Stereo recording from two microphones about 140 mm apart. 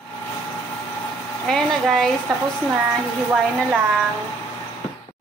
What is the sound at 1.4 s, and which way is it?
Speech, 5° left (ahead or behind).